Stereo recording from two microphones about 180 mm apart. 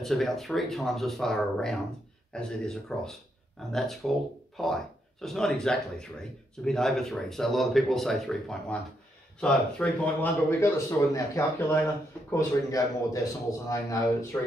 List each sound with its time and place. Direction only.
0.0 s speech: centre (ahead or behind)
10.6 s a man's voice: 15° left (ahead or behind)